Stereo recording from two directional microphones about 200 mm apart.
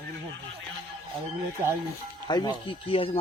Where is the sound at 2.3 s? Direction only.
20° left (ahead or behind).